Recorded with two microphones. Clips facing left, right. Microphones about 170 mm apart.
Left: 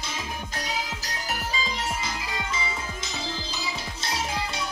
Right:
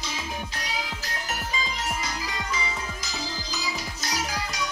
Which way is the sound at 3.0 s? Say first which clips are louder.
Left 1 dB; 25° left (ahead or behind).